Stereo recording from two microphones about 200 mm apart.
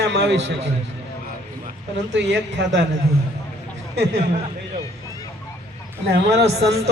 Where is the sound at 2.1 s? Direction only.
60° right (ahead or behind).